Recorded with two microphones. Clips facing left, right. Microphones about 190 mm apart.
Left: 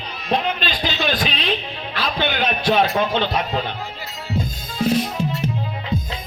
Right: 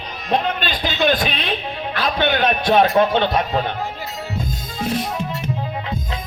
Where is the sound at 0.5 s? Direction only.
55° right (ahead or behind).